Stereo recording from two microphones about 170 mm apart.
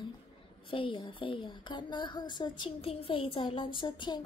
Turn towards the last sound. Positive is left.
turn(degrees=25)  # may be behind; listen again after turning